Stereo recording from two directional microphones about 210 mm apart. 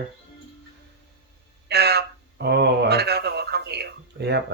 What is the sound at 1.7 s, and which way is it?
Speech, 50° right (ahead or behind).